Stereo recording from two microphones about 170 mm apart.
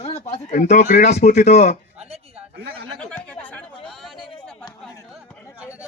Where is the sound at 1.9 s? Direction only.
35° right (ahead or behind).